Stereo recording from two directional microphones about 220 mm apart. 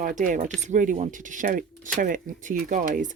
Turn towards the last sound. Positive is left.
turn(degrees=-35)  # may be behind; listen again after turning